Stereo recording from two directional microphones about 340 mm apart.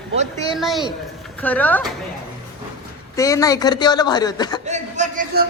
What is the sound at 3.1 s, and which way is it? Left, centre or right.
A man's voice, centre.